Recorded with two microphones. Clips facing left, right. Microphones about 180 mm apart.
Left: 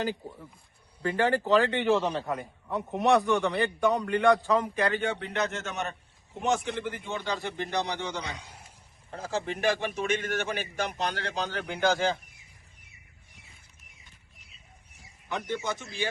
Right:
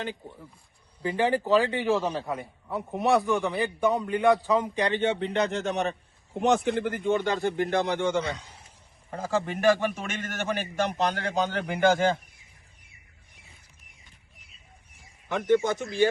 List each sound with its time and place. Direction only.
0.1 s a man's voice: centre (ahead or behind)
1.0 s a man's voice: 10° right (ahead or behind)
4.7 s speech: 25° right (ahead or behind)
6.8 s a man's voice: 50° right (ahead or behind)
8.4 s a man's voice: 10° left (ahead or behind)
9.0 s a man's voice: 45° right (ahead or behind)
15.3 s a man's voice: 50° right (ahead or behind)